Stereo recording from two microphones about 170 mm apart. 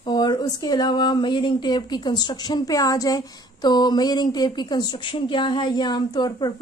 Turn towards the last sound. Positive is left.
turn(degrees=25)  # may be behind; listen again after turning